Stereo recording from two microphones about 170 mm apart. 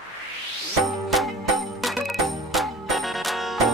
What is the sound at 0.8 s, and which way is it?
Music, centre (ahead or behind).